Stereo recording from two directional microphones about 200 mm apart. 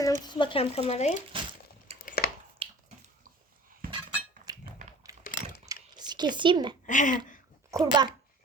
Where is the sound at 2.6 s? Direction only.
30° right (ahead or behind).